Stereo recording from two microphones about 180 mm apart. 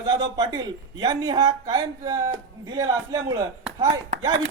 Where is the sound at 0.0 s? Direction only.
25° right (ahead or behind).